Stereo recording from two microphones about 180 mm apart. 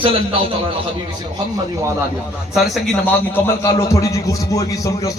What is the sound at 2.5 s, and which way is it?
Speech, centre (ahead or behind).